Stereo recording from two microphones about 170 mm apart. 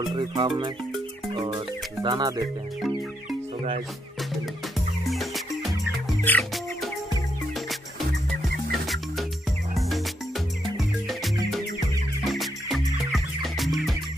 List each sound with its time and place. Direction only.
0.0 s music: 25° right (ahead or behind)
5.0 s music: centre (ahead or behind)
8.8 s music: centre (ahead or behind)